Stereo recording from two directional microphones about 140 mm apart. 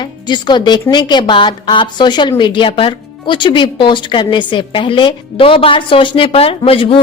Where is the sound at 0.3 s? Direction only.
30° left (ahead or behind).